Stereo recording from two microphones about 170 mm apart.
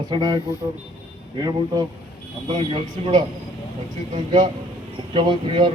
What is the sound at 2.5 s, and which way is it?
Speech, 35° right (ahead or behind).